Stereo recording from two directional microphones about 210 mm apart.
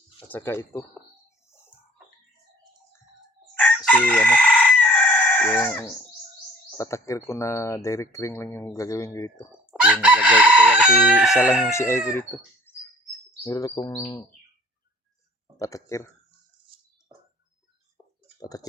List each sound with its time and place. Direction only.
0.3 s speech: 10° left (ahead or behind)
3.8 s chicken: 5° left (ahead or behind)
6.7 s speech: 15° left (ahead or behind)
9.5 s chicken: 5° right (ahead or behind)
11.7 s speech: 15° left (ahead or behind)
15.5 s speech: 15° left (ahead or behind)